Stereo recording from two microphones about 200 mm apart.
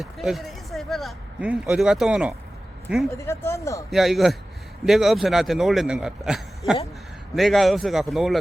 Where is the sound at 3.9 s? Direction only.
Centre (ahead or behind).